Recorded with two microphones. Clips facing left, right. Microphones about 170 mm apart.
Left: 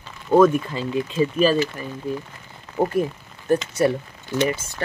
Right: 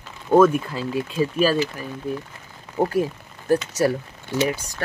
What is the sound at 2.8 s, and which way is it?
Speech, 5° right (ahead or behind).